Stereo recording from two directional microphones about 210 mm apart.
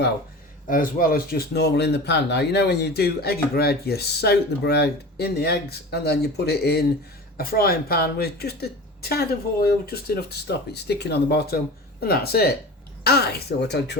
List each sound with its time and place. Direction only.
0.7 s speech: 40° left (ahead or behind)